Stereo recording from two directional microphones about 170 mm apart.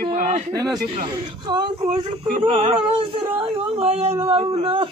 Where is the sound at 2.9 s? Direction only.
35° right (ahead or behind).